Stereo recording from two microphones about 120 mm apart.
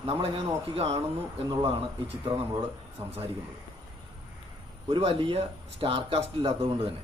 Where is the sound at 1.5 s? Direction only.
50° right (ahead or behind).